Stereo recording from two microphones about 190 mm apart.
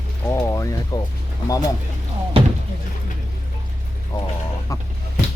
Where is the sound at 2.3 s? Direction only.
30° right (ahead or behind).